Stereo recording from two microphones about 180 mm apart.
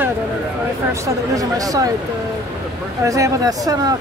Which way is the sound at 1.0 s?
20° right (ahead or behind).